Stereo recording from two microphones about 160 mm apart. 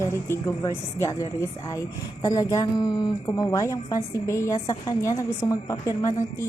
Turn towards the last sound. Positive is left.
turn(degrees=20)  # may be behind; listen again after turning